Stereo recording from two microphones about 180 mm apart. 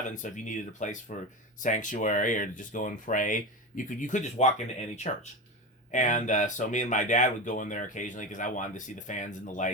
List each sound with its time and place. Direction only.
0.1 s speech: 45° left (ahead or behind)